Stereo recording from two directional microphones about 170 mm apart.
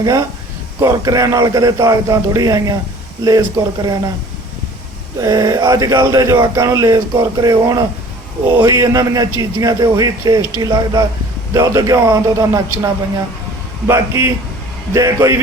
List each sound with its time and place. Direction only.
0.8 s speech: 20° right (ahead or behind)
5.2 s a man's voice: 20° right (ahead or behind)